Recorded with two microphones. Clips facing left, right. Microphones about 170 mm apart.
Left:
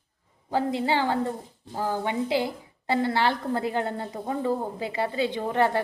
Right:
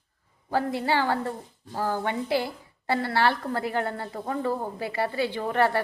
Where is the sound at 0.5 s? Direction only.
20° left (ahead or behind).